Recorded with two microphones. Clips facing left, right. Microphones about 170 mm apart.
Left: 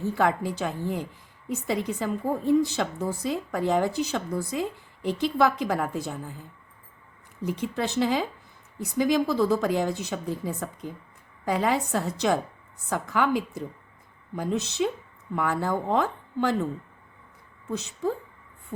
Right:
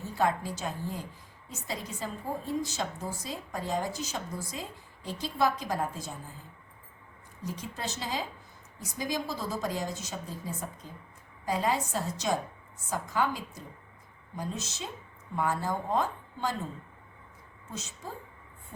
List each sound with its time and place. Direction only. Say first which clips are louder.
0.2 s a woman's voice: left 3 dB; 65° left (ahead or behind)
7.4 s a woman's voice: left 9 dB; 65° left (ahead or behind)
17.7 s a woman's voice: left 13 dB; 65° left (ahead or behind)